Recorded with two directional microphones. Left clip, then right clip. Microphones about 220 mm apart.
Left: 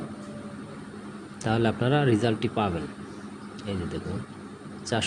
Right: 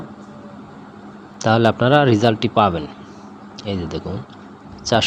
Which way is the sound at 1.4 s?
20° right (ahead or behind).